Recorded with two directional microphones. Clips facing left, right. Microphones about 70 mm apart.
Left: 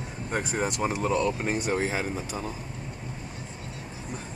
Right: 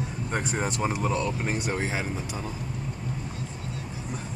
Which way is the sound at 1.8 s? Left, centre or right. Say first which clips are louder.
Left 2 dB; centre.